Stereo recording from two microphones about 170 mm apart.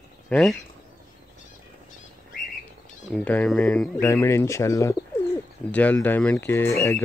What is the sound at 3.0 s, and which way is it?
Speech, 5° left (ahead or behind).